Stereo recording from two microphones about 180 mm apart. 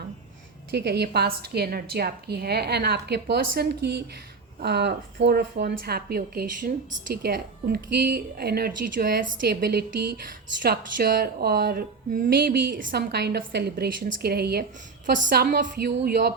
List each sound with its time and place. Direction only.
0.7 s speech: 65° right (ahead or behind)
15.0 s speech: 45° right (ahead or behind)